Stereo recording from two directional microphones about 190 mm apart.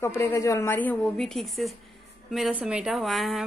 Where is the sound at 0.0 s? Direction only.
15° left (ahead or behind).